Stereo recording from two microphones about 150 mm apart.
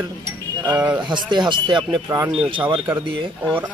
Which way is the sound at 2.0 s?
20° right (ahead or behind).